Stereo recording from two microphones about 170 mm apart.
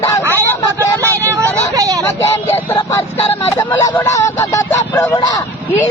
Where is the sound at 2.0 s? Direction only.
15° left (ahead or behind).